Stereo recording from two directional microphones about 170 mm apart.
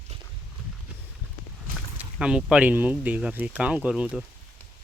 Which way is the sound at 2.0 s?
5° right (ahead or behind).